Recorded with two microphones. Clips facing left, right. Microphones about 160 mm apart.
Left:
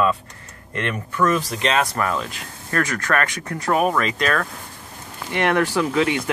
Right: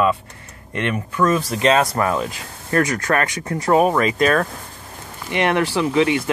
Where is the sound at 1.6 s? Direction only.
35° right (ahead or behind).